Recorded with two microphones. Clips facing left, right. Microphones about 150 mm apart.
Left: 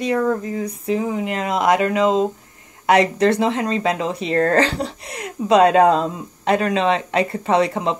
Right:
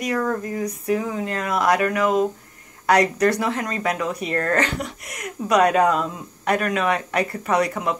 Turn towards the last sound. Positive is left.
turn(degrees=25)  # may be behind; listen again after turning